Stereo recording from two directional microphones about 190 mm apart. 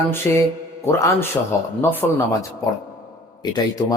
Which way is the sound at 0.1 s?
15° left (ahead or behind).